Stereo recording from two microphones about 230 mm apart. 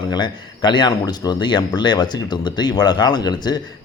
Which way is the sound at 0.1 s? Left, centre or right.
Centre.